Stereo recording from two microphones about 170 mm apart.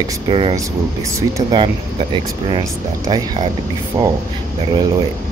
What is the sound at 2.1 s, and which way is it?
Speech, 25° right (ahead or behind).